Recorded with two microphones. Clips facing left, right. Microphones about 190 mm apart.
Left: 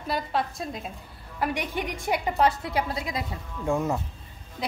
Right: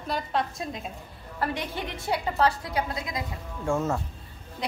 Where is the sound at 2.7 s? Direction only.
25° left (ahead or behind).